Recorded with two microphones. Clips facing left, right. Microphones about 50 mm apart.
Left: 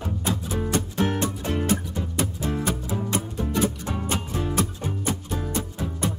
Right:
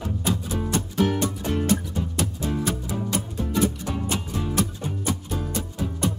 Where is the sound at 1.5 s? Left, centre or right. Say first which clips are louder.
Right 2 dB; centre.